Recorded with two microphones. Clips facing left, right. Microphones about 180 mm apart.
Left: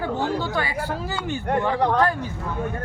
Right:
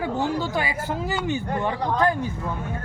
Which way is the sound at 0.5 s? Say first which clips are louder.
Even; 20° right (ahead or behind).